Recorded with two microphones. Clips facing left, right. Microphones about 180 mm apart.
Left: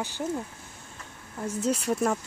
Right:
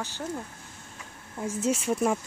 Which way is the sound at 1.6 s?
5° right (ahead or behind).